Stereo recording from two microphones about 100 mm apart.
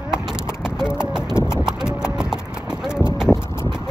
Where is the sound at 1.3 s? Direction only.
25° left (ahead or behind).